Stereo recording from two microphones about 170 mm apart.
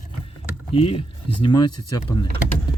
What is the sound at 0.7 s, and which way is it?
Speech, 35° left (ahead or behind).